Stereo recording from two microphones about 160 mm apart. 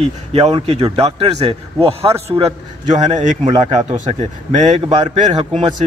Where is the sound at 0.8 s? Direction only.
25° right (ahead or behind).